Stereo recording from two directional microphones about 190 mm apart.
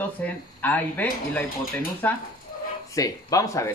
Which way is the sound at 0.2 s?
10° left (ahead or behind).